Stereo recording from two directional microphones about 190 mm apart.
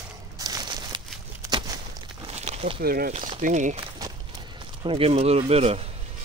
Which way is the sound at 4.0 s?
20° right (ahead or behind).